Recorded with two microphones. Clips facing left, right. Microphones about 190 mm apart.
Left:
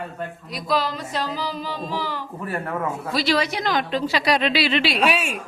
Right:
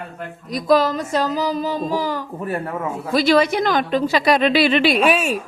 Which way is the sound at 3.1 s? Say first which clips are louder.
Right 8 dB; 50° right (ahead or behind).